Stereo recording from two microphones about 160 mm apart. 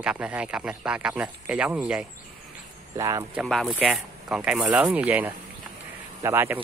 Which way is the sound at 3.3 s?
Centre (ahead or behind).